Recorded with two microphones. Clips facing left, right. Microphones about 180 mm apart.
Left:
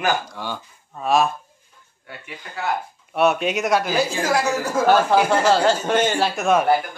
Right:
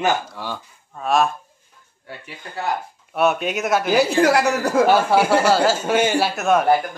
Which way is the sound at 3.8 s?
65° right (ahead or behind).